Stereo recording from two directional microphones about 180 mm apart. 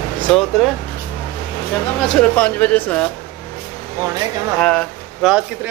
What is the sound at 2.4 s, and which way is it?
Speech, 10° left (ahead or behind).